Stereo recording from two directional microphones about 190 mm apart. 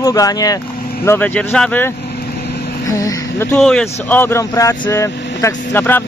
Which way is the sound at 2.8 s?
20° left (ahead or behind).